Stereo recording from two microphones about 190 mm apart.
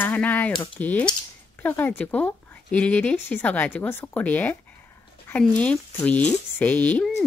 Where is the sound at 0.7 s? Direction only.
10° left (ahead or behind).